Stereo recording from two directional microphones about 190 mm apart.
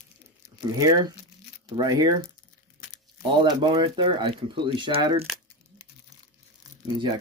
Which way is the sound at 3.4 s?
25° right (ahead or behind).